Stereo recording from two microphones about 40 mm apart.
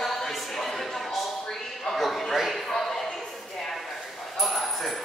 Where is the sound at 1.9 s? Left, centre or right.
Centre.